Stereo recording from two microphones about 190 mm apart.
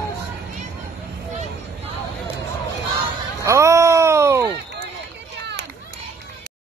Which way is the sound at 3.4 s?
15° right (ahead or behind).